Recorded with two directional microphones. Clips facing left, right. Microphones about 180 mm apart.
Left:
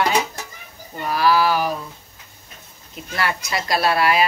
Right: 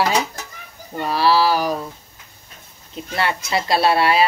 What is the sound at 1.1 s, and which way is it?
Speech, 30° right (ahead or behind).